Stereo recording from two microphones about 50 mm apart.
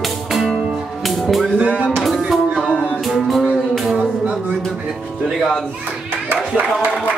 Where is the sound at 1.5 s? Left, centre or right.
Right.